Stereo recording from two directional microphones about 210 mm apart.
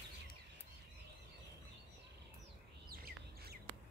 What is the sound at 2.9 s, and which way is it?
Bird, 45° right (ahead or behind).